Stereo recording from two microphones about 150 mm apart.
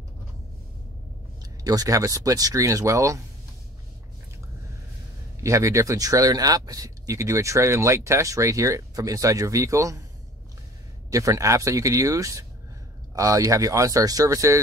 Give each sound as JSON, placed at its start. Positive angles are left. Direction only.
{"t": 1.4, "sound": "speech", "side_deg": -25}
{"t": 5.4, "sound": "speech", "side_deg": -20}
{"t": 11.1, "sound": "speech", "side_deg": -20}